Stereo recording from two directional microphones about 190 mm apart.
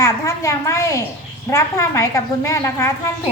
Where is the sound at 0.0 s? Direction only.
15° left (ahead or behind).